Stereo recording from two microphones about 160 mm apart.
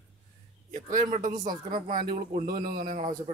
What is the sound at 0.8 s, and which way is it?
Speech, 55° right (ahead or behind).